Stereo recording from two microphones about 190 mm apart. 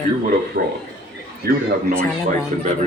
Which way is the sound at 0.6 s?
45° right (ahead or behind).